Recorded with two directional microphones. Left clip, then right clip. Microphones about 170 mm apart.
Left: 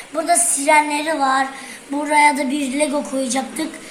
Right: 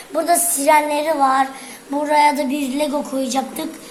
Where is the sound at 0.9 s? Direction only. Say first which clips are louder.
Right 2 dB; 30° right (ahead or behind).